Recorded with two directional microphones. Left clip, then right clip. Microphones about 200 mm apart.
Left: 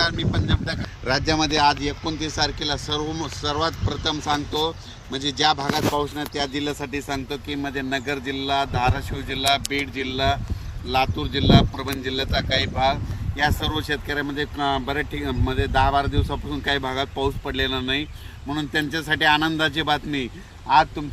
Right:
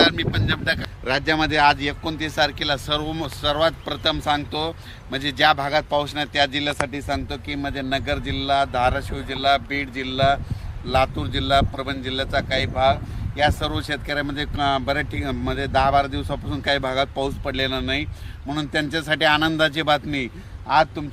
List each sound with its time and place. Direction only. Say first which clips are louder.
0.0 s speech: right 5 dB; 15° right (ahead or behind)
1.2 s speech: right 2 dB; 10° left (ahead or behind)
1.9 s speech: right 1 dB; 10° right (ahead or behind)
3.0 s speech: even; 45° right (ahead or behind)
3.4 s speech: right 4 dB; 20° right (ahead or behind)
9.6 s speech: even; 60° right (ahead or behind)
10.2 s speech: right 5 dB; 25° right (ahead or behind)